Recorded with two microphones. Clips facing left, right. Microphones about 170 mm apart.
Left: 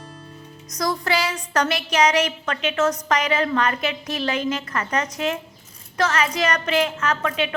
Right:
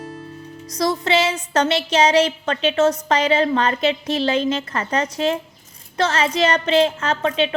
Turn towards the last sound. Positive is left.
turn(degrees=-25)  # may be behind; listen again after turning